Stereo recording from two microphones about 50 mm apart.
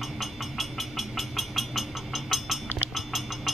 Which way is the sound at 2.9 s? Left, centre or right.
Centre.